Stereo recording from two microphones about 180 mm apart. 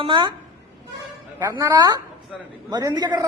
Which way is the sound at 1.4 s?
20° right (ahead or behind).